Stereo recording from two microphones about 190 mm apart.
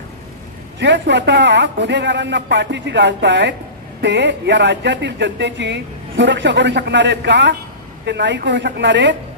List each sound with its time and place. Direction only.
0.7 s speech: 70° right (ahead or behind)